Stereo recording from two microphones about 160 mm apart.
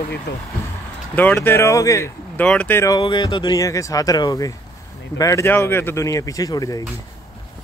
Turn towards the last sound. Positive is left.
turn(degrees=25)  # may be behind; listen again after turning